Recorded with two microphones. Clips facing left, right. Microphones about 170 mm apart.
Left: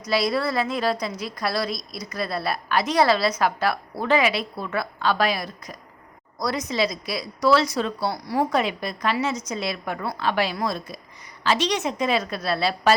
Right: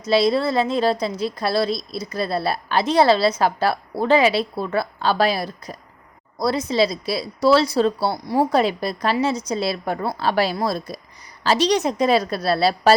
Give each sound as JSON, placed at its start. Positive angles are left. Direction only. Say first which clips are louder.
{"t": 0.0, "sound": "a woman's voice", "louder": "right 5 dB", "side_deg": -25}